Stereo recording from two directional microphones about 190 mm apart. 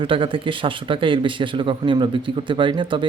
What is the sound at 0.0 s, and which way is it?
A man's voice, 25° right (ahead or behind).